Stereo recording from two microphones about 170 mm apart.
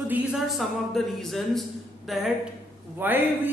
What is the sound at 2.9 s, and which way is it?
Speech, 10° right (ahead or behind).